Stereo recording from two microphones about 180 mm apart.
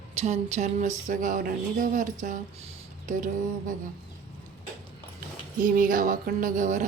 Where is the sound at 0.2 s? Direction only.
40° right (ahead or behind).